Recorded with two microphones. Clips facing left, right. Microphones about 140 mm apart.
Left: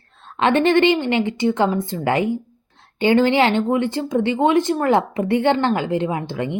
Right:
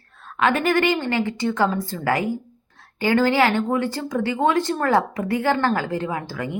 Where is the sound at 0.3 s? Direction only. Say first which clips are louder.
Left 4 dB; 25° left (ahead or behind).